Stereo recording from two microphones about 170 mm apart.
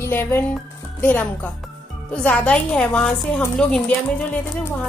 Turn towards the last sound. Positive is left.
turn(degrees=5)  # may be behind; listen again after turning